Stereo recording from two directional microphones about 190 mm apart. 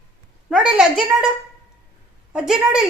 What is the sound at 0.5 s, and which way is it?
Speech, 5° right (ahead or behind).